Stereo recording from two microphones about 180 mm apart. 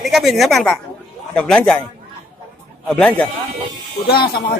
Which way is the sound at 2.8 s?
5° left (ahead or behind).